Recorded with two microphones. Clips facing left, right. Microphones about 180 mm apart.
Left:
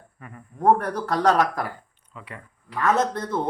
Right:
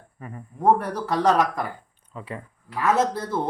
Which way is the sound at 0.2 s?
30° right (ahead or behind).